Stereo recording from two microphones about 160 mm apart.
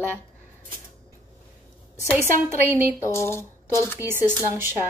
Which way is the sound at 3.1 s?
15° left (ahead or behind).